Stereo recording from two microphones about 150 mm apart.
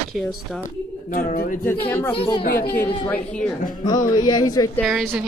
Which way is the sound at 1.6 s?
15° left (ahead or behind).